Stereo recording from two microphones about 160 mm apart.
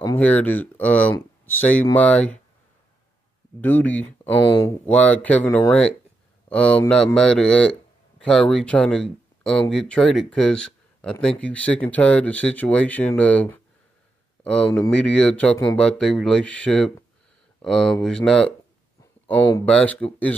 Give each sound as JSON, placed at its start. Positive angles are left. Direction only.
{"t": 0.0, "sound": "speech", "side_deg": 10}
{"t": 3.6, "sound": "speech", "side_deg": 10}
{"t": 4.4, "sound": "speech", "side_deg": 30}
{"t": 4.6, "sound": "speech", "side_deg": 10}